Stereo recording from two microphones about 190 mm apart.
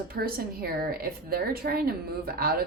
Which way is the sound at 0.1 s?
50° right (ahead or behind).